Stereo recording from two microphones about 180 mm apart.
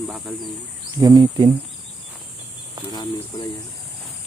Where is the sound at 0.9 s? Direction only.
20° right (ahead or behind).